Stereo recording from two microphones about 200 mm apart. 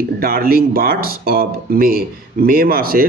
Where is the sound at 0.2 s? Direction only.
45° right (ahead or behind).